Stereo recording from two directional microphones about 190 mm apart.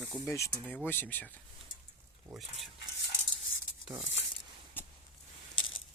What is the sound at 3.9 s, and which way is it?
Speech, centre (ahead or behind).